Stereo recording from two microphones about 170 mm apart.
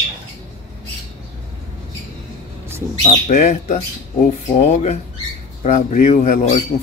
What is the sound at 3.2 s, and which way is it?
Speech, 50° left (ahead or behind).